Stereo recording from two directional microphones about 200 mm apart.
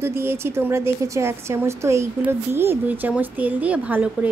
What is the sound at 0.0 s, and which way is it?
Speech, 10° right (ahead or behind).